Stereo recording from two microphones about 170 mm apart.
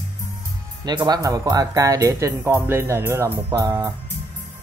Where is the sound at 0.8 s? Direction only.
25° right (ahead or behind).